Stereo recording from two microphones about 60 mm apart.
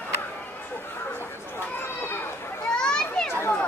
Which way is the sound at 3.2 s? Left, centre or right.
Left.